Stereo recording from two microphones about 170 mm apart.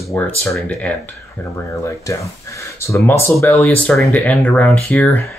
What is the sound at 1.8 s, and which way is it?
Speech, 20° left (ahead or behind).